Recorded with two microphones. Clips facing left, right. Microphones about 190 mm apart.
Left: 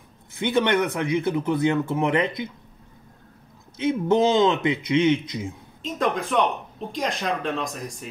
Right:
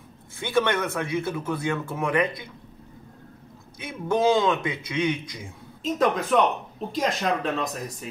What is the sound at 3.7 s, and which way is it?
Speech, 20° left (ahead or behind).